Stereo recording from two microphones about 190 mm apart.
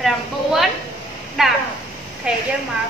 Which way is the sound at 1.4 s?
Centre (ahead or behind).